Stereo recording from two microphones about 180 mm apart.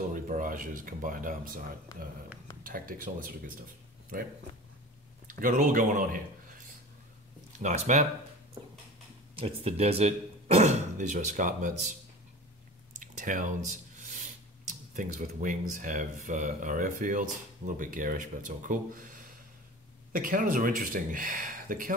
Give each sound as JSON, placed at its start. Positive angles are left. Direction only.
{"t": 0.1, "sound": "speech", "side_deg": -45}
{"t": 2.6, "sound": "speech", "side_deg": -50}
{"t": 5.3, "sound": "speech", "side_deg": -45}
{"t": 7.5, "sound": "speech", "side_deg": -40}
{"t": 9.3, "sound": "speech", "side_deg": -30}
{"t": 13.0, "sound": "a sound", "side_deg": -45}
{"t": 15.0, "sound": "speech", "side_deg": -45}